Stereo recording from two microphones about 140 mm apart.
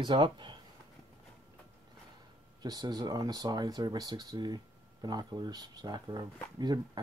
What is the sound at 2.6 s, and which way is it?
Speech, 30° right (ahead or behind).